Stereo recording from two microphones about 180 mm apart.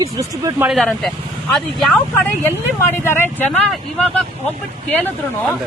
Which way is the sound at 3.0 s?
10° left (ahead or behind).